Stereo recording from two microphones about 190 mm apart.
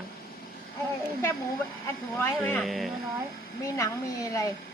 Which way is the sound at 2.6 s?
Centre (ahead or behind).